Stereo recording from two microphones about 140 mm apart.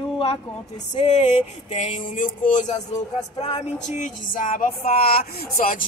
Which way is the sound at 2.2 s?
65° left (ahead or behind).